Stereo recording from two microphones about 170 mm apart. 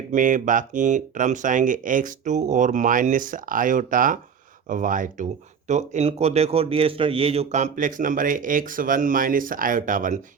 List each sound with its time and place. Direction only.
0.1 s speech: 50° right (ahead or behind)